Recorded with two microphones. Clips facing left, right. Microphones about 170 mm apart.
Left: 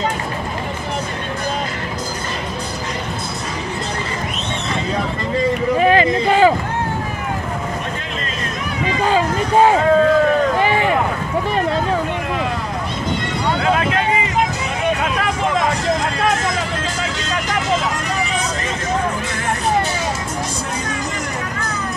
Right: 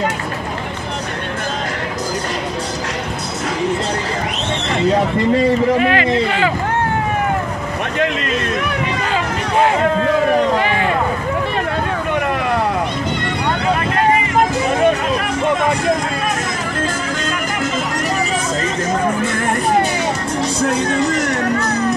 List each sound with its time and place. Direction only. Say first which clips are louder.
5.8 s speech: left 1 dB; 35° left (ahead or behind)
12.1 s vehicle: right 4 dB; 65° right (ahead or behind)